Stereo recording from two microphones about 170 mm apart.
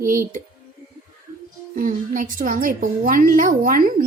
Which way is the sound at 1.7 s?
55° right (ahead or behind).